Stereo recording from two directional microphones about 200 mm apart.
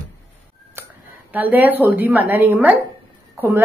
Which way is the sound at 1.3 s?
10° right (ahead or behind).